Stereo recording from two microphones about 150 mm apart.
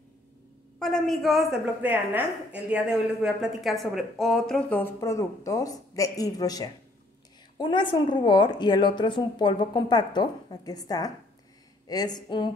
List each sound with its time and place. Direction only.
0.7 s a woman's voice: centre (ahead or behind); by 12.4 s 30° left (ahead or behind)